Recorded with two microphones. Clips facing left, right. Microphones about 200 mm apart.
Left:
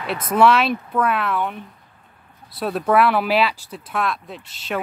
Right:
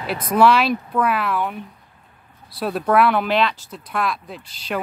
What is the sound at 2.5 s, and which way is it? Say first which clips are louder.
Speech: even; centre (ahead or behind).